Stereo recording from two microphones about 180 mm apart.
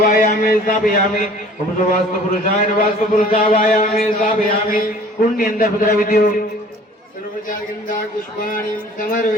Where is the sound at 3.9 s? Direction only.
55° left (ahead or behind).